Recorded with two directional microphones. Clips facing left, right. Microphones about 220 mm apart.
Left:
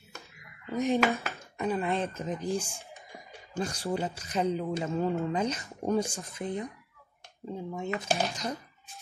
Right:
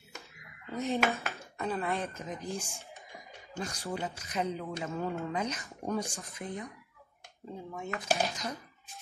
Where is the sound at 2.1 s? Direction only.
30° left (ahead or behind).